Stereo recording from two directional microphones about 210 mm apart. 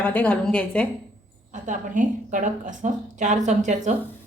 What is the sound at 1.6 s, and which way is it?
A woman's voice, 35° right (ahead or behind).